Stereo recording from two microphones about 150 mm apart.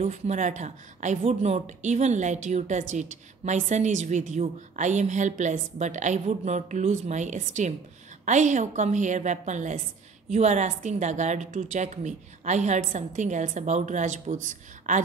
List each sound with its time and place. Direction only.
0.0 s speech: 55° right (ahead or behind)